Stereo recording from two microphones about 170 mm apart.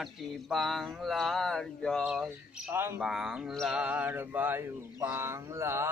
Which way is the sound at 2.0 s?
5° right (ahead or behind).